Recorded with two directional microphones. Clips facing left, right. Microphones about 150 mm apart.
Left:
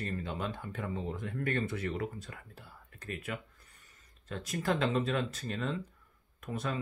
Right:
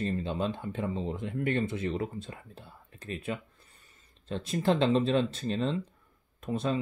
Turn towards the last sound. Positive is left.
turn(degrees=-25)  # may be behind; listen again after turning